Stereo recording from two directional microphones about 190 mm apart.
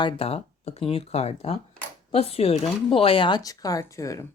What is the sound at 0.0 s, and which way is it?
Speech, 30° left (ahead or behind).